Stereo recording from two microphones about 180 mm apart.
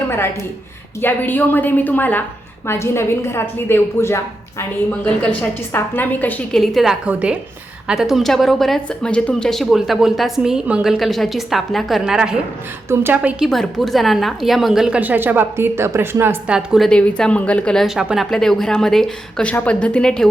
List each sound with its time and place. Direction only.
1.0 s a woman's voice: 10° left (ahead or behind); by 13.3 s 10° right (ahead or behind)
13.4 s a woman's voice: centre (ahead or behind)